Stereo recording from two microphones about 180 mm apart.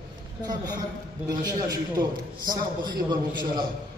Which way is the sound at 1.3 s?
20° right (ahead or behind).